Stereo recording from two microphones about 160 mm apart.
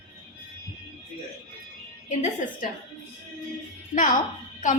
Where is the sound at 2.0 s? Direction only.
50° left (ahead or behind).